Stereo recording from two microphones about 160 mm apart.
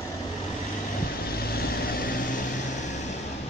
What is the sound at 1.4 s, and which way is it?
Vehicle, 70° left (ahead or behind).